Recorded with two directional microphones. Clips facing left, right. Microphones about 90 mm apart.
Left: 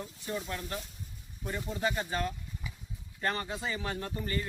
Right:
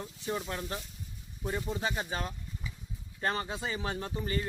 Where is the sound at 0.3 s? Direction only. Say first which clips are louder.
Right 2 dB; 20° right (ahead or behind).